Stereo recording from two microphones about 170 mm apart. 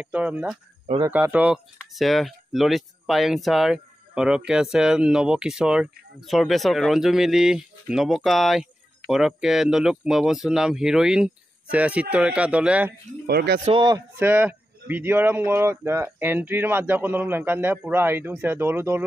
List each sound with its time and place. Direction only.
0.0 s speech: 10° right (ahead or behind)
13.3 s speech: 70° right (ahead or behind)
13.7 s speech: 25° right (ahead or behind)